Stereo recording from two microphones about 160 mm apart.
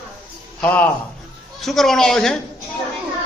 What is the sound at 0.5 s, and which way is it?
A man's voice, 10° left (ahead or behind).